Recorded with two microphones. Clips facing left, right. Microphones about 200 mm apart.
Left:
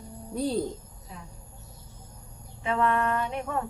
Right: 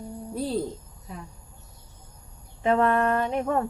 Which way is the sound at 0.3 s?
Centre (ahead or behind).